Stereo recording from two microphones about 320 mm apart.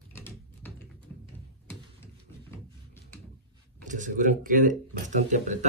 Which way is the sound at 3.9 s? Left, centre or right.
Right.